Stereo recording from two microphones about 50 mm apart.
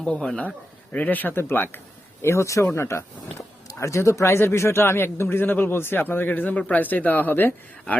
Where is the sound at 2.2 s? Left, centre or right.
Left.